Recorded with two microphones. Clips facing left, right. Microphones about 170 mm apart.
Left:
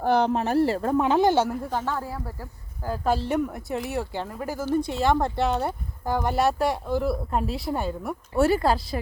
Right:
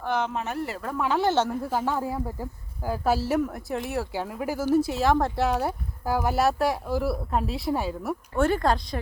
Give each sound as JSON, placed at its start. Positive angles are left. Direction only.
{"t": 0.0, "sound": "speech", "side_deg": 35}
{"t": 1.7, "sound": "speech", "side_deg": -10}